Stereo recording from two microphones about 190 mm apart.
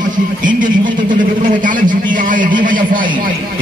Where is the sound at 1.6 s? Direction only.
45° right (ahead or behind).